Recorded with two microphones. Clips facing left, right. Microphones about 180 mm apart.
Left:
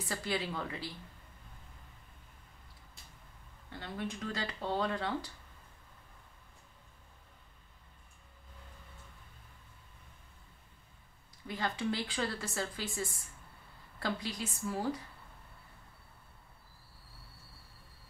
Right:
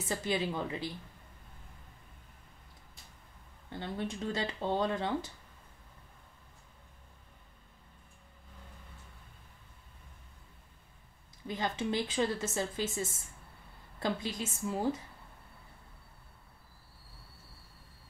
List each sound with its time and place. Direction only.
0.0 s a woman's voice: 20° right (ahead or behind)
3.7 s a woman's voice: 25° right (ahead or behind)
11.4 s a woman's voice: 20° right (ahead or behind)